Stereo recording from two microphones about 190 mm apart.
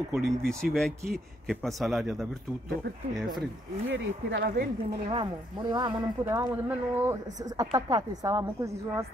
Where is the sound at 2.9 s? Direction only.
60° right (ahead or behind).